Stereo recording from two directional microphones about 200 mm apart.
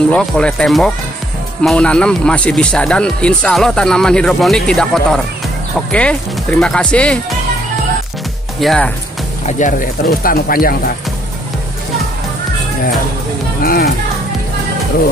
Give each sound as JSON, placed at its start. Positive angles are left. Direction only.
{"t": 0.1, "sound": "speech", "side_deg": 5}
{"t": 8.5, "sound": "speech", "side_deg": 5}
{"t": 9.5, "sound": "speech", "side_deg": 40}
{"t": 13.6, "sound": "speech", "side_deg": 45}